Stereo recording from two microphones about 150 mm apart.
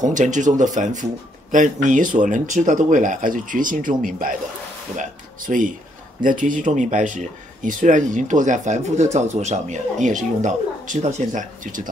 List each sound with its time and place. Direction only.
0.0 s speech: 55° right (ahead or behind)